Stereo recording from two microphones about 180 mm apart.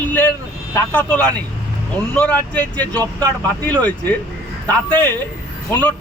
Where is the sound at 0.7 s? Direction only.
10° left (ahead or behind).